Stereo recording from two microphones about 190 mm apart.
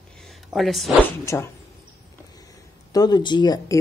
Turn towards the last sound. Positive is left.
turn(degrees=20)  # may be behind; listen again after turning